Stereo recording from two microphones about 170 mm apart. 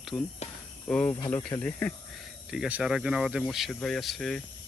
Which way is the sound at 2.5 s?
5° right (ahead or behind).